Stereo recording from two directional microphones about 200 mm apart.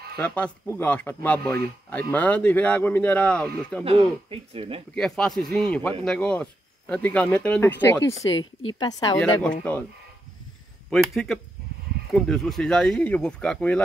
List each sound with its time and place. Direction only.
0.2 s speech: 5° left (ahead or behind)
3.8 s a man's voice: 30° right (ahead or behind)
4.9 s speech: 5° left (ahead or behind)
8.3 s speech: 75° left (ahead or behind)
8.7 s a woman's voice: 20° left (ahead or behind)
9.2 s speech: 5° left (ahead or behind)
10.9 s speech: centre (ahead or behind)
12.1 s speech: centre (ahead or behind)